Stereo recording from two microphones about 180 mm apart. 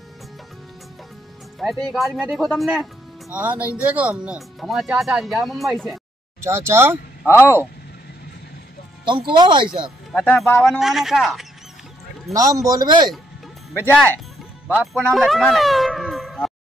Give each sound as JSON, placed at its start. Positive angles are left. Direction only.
{"t": 1.6, "sound": "speech", "side_deg": 0}
{"t": 6.4, "sound": "speech", "side_deg": -15}
{"t": 7.2, "sound": "speech", "side_deg": 15}
{"t": 9.3, "sound": "speech", "side_deg": -25}
{"t": 9.7, "sound": "speech", "side_deg": 5}
{"t": 12.3, "sound": "speech", "side_deg": -20}
{"t": 13.7, "sound": "speech", "side_deg": 10}